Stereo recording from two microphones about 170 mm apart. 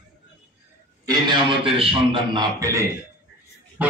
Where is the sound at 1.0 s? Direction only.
25° right (ahead or behind).